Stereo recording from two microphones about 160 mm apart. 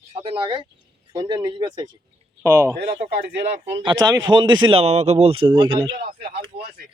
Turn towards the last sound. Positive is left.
turn(degrees=-75)  # may be behind; listen again after turning